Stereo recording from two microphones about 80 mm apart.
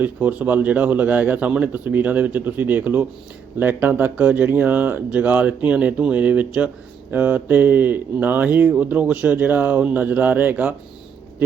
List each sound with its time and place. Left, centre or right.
0.0 s speech: centre